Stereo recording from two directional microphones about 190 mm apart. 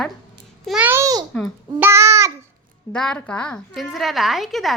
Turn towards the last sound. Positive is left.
turn(degrees=0)  # may be behind; listen again after turning